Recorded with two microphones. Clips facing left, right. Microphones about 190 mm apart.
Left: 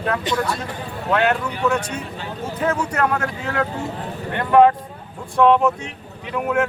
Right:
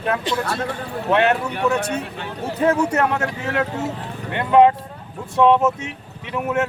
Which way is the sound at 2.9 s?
25° right (ahead or behind).